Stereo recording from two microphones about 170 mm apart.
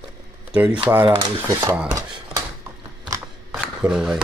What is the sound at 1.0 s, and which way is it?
Speech, 30° right (ahead or behind).